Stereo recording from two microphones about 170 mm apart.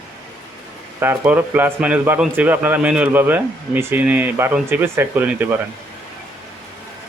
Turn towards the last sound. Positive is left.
turn(degrees=-10)  # may be behind; listen again after turning